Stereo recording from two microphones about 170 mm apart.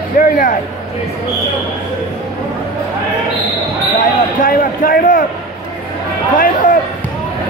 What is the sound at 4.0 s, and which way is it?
Basketball bounce, 55° left (ahead or behind).